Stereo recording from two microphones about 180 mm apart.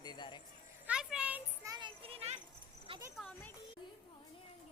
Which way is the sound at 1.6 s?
25° right (ahead or behind).